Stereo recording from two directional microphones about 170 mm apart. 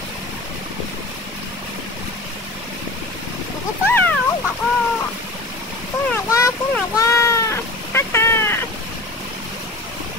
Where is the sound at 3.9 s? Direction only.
10° left (ahead or behind).